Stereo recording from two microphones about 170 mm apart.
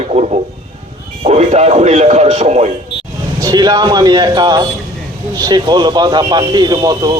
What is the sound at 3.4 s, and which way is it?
Speech, 25° right (ahead or behind).